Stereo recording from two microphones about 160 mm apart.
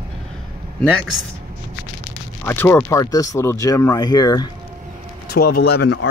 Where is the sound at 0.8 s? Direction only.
Centre (ahead or behind).